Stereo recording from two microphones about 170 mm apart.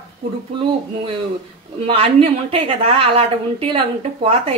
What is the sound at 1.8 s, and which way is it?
A woman's voice, 30° right (ahead or behind).